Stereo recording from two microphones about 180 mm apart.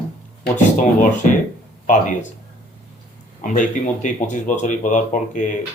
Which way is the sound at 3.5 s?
45° left (ahead or behind).